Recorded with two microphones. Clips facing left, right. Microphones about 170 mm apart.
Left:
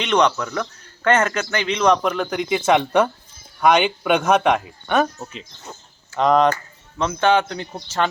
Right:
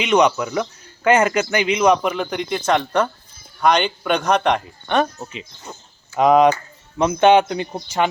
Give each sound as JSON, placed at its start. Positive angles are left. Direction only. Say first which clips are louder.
{"t": 0.0, "sound": "a man's voice", "louder": "right 2 dB", "side_deg": -10}
{"t": 5.2, "sound": "a man's voice", "louder": "right 2 dB", "side_deg": -5}